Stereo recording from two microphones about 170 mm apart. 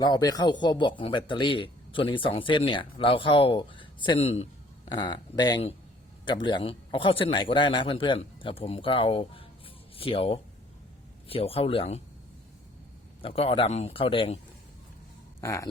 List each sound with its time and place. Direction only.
0.0 s a man's voice: 25° left (ahead or behind)
13.2 s a man's voice: 35° left (ahead or behind)
15.4 s speech: 20° left (ahead or behind)